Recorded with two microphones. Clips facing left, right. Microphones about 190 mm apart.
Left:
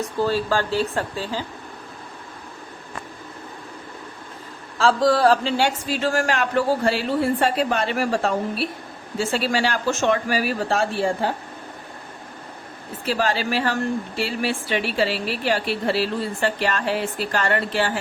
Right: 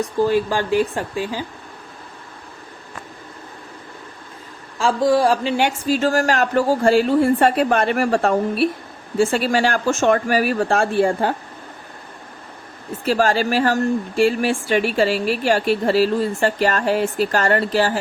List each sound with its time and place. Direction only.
0.0 s speech: 15° right (ahead or behind)
4.8 s speech: 15° right (ahead or behind)
5.8 s a woman's voice: 40° right (ahead or behind)
13.1 s a woman's voice: 45° right (ahead or behind)